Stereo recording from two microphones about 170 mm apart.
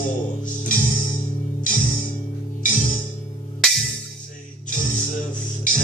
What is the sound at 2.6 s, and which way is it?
Music, 50° left (ahead or behind).